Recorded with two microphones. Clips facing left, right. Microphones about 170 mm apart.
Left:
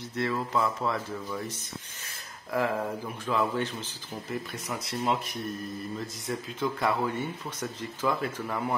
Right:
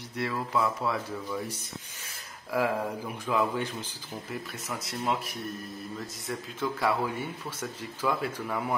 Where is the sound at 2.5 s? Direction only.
10° right (ahead or behind).